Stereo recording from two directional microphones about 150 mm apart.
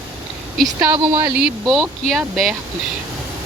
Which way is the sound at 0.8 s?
30° right (ahead or behind).